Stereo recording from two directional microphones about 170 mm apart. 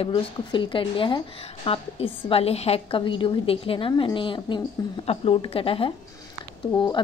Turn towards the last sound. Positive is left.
turn(degrees=25)  # may be behind; listen again after turning